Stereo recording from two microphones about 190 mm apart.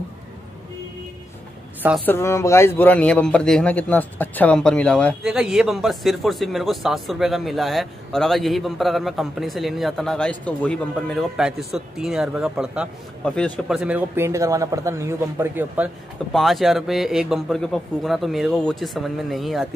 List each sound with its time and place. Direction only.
1.8 s a woman's voice: 5° right (ahead or behind)
2.0 s speech: 15° left (ahead or behind)